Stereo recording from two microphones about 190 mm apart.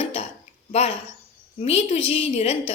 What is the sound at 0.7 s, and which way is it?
A woman's voice, 35° left (ahead or behind).